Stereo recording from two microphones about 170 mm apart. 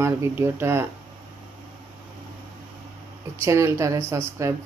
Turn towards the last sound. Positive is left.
turn(degrees=-15)  # may be behind; listen again after turning